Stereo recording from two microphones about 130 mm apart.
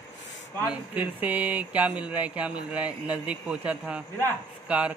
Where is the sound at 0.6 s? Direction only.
10° right (ahead or behind).